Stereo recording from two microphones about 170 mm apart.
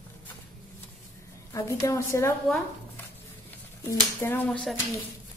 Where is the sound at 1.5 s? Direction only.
20° left (ahead or behind).